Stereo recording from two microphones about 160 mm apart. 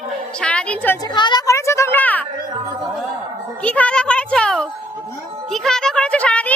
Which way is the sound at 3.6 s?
5° left (ahead or behind).